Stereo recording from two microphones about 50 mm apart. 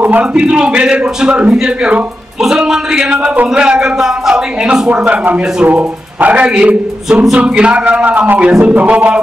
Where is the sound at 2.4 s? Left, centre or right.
Centre.